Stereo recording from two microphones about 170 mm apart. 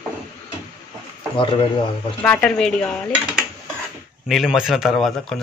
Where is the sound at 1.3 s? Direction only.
30° left (ahead or behind).